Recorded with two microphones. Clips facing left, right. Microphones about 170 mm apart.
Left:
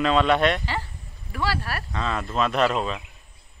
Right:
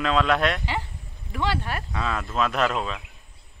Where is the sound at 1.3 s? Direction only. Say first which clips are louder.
Right 1 dB; 20° right (ahead or behind).